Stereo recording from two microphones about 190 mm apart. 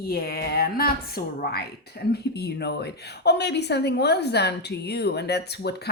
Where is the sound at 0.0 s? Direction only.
55° left (ahead or behind).